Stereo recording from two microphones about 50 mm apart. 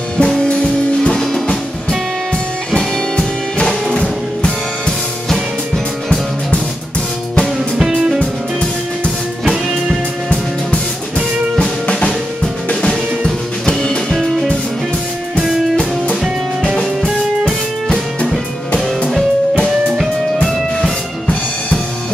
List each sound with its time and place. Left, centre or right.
0.2 s music: centre
1.1 s music: centre
2.7 s music: centre
8.2 s music: left
11.8 s music: left
13.7 s music: centre
14.1 s music: centre
16.7 s music: centre